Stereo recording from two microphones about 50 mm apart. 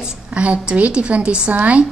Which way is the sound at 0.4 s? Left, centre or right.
Right.